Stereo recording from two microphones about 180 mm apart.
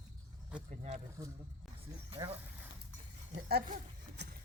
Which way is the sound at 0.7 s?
35° right (ahead or behind).